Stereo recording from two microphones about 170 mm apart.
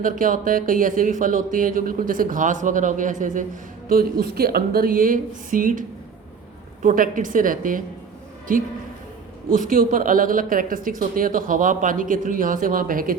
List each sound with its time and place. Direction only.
0.0 s speech: 50° right (ahead or behind)
3.8 s speech: 60° right (ahead or behind)
6.8 s speech: 50° right (ahead or behind)